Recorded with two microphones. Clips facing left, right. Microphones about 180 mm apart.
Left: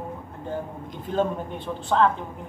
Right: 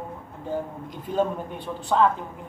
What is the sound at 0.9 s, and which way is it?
Speech, 10° right (ahead or behind).